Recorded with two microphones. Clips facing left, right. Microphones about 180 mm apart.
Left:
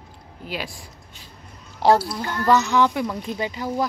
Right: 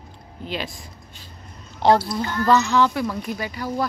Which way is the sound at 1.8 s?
5° left (ahead or behind).